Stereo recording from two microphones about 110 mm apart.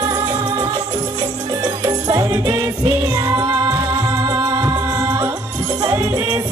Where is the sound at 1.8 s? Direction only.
30° right (ahead or behind).